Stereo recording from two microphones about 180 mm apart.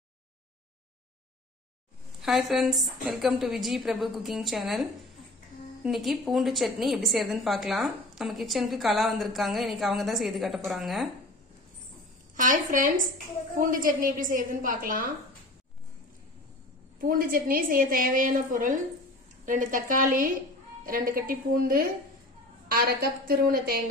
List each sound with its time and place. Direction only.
2.2 s a woman's voice: centre (ahead or behind)
5.9 s a woman's voice: centre (ahead or behind)
12.4 s a woman's voice: 50° right (ahead or behind)
17.0 s a woman's voice: 50° right (ahead or behind)